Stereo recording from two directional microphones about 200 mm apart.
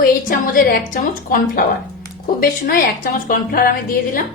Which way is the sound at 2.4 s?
45° left (ahead or behind).